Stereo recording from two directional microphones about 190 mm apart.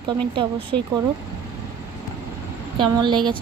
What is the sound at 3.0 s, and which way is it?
Speech, 25° right (ahead or behind).